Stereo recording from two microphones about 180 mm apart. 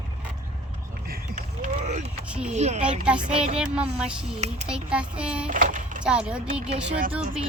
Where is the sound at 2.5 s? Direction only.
40° right (ahead or behind).